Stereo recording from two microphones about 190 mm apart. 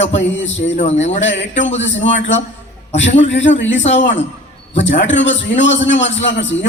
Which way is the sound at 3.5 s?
75° left (ahead or behind).